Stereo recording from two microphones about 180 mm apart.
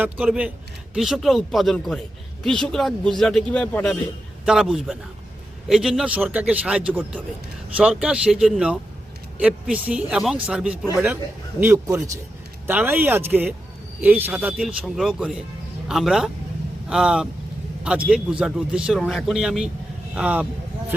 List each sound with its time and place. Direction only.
0.0 s a man's voice: 5° right (ahead or behind)
4.4 s a man's voice: 5° right (ahead or behind)